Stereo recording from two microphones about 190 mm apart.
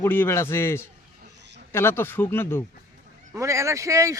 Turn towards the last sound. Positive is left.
turn(degrees=-15)  # may be behind; listen again after turning